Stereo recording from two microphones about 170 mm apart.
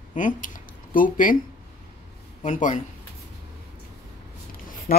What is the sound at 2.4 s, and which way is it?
Speech, 45° left (ahead or behind).